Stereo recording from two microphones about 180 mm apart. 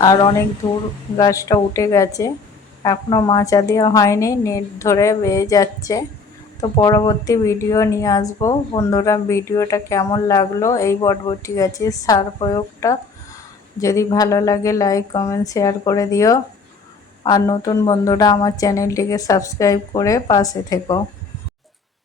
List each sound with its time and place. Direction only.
0.0 s a woman's voice: 20° left (ahead or behind)